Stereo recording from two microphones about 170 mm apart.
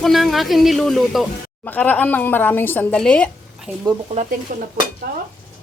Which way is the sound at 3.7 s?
10° right (ahead or behind).